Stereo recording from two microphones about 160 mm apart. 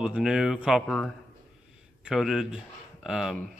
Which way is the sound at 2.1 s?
5° right (ahead or behind).